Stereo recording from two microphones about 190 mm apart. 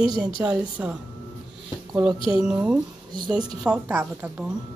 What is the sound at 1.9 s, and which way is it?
Speech, 20° right (ahead or behind).